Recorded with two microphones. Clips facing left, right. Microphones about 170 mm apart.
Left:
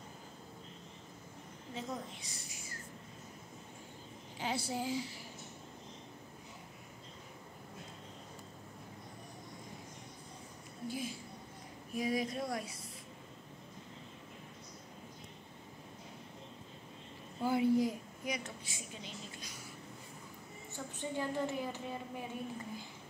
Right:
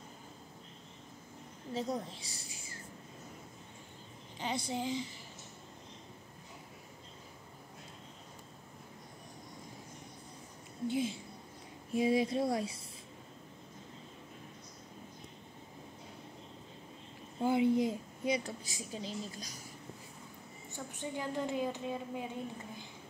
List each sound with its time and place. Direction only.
1.7 s a woman's voice: 35° right (ahead or behind)
4.4 s a woman's voice: 5° left (ahead or behind)
10.9 s speech: 25° right (ahead or behind)
17.4 s a woman's voice: 20° right (ahead or behind); by 19.5 s 35° right (ahead or behind)
20.7 s a woman's voice: 15° right (ahead or behind)